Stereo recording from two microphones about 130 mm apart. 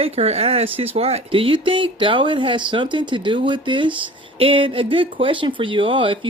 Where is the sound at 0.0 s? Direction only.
50° right (ahead or behind).